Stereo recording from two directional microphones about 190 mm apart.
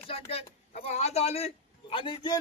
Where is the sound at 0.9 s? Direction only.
35° left (ahead or behind).